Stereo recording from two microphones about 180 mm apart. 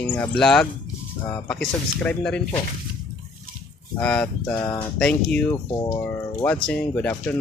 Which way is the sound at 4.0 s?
5° left (ahead or behind).